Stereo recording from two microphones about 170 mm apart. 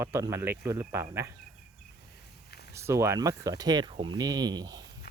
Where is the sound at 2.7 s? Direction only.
15° right (ahead or behind).